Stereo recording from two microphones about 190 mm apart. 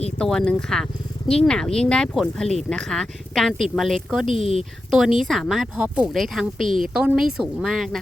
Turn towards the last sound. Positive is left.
turn(degrees=0)  # may be behind; listen again after turning